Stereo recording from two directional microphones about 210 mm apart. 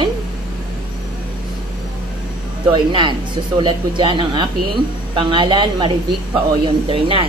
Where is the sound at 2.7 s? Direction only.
20° right (ahead or behind).